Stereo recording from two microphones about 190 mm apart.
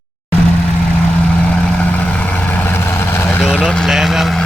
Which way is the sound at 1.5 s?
5° left (ahead or behind).